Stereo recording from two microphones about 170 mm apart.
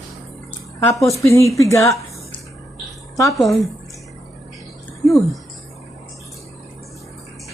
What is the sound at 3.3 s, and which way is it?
Speech, centre (ahead or behind).